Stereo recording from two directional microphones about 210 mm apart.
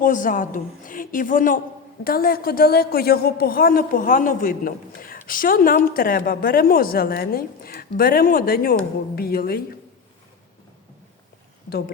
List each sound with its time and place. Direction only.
0.0 s a woman's voice: 40° left (ahead or behind)